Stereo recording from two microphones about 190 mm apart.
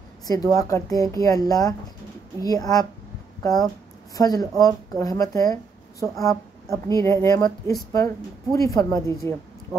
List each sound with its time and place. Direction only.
0.3 s speech: 15° left (ahead or behind)
4.1 s speech: 20° left (ahead or behind)